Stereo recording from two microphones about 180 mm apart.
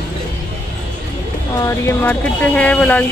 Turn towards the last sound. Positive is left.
turn(degrees=10)  # may be behind; listen again after turning